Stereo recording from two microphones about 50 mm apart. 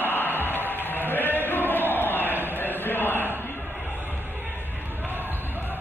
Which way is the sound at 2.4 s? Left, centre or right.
Left.